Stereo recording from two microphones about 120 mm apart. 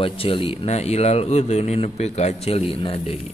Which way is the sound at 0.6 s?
65° left (ahead or behind).